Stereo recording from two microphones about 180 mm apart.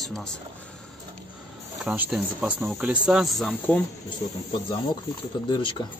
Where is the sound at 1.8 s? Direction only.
10° right (ahead or behind).